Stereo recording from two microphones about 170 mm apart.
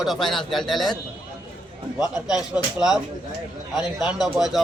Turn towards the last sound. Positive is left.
turn(degrees=0)  # may be behind; listen again after turning